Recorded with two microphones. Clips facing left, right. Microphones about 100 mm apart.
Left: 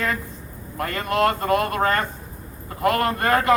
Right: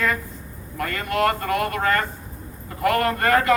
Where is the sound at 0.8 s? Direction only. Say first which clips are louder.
Left 1 dB; 25° left (ahead or behind).